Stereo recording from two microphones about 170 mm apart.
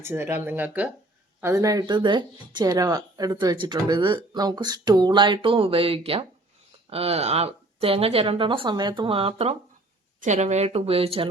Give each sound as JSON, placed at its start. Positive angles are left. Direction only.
{"t": 0.0, "sound": "speech", "side_deg": -15}